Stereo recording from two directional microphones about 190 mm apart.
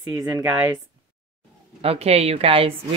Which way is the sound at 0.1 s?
10° right (ahead or behind).